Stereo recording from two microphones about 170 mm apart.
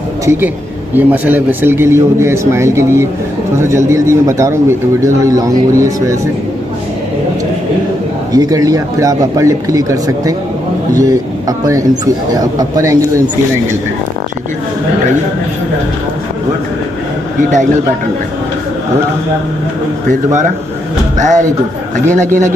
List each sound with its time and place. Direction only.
0.2 s a man's voice: 15° right (ahead or behind)
8.3 s speech: 20° right (ahead or behind)
21.2 s speech: 45° right (ahead or behind)